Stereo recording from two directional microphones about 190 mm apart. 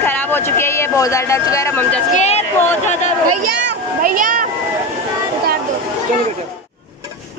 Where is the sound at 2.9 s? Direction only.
40° left (ahead or behind).